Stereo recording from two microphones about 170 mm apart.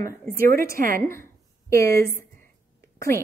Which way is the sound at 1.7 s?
15° left (ahead or behind).